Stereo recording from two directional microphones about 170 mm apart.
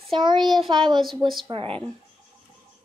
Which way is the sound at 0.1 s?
25° right (ahead or behind).